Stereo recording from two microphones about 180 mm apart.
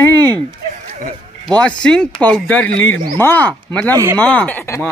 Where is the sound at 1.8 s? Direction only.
5° left (ahead or behind).